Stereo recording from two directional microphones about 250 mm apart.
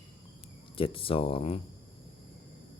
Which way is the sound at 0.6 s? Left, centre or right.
Left.